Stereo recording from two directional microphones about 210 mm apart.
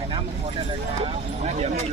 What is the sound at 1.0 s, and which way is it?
Clip-clop, 30° right (ahead or behind).